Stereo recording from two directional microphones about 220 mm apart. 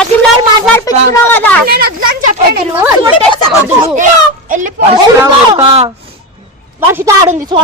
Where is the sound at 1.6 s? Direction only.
45° right (ahead or behind).